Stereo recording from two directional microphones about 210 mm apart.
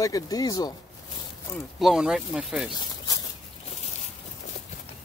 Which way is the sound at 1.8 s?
Centre (ahead or behind).